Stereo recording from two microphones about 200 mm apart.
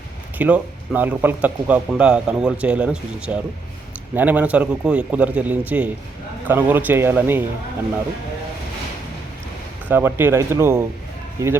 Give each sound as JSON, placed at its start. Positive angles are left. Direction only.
{"t": 0.3, "sound": "speech", "side_deg": -5}
{"t": 9.9, "sound": "speech", "side_deg": -10}